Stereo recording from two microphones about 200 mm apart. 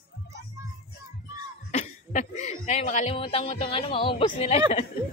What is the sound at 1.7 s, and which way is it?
Speech, 35° left (ahead or behind).